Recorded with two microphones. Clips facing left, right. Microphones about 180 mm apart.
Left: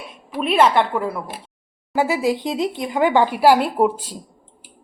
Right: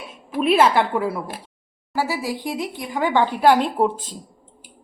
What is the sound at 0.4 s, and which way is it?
Speech, 5° right (ahead or behind).